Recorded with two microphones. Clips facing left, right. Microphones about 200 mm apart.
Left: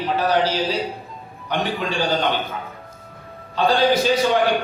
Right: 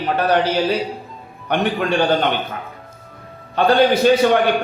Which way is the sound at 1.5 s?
60° right (ahead or behind).